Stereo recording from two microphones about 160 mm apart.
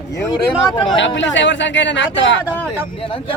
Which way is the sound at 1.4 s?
90° left.